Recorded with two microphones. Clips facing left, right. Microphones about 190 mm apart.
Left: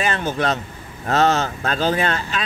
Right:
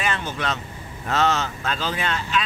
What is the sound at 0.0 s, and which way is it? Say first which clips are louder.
Speech: left 5 dB; 45° left (ahead or behind).